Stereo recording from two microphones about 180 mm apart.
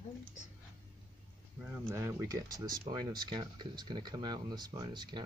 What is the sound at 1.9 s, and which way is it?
Speech, 15° right (ahead or behind).